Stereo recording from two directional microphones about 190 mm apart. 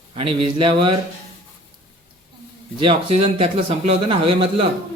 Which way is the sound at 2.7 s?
30° right (ahead or behind).